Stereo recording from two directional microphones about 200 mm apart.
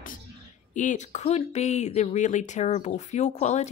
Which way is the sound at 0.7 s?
35° left (ahead or behind).